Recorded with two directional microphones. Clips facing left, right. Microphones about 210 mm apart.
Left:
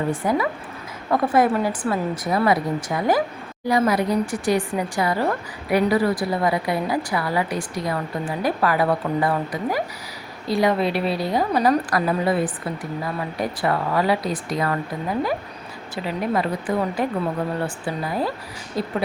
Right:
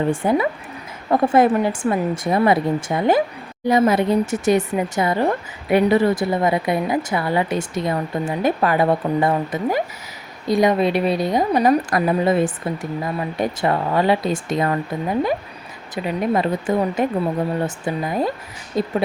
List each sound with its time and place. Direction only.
0.1 s speech: 25° right (ahead or behind)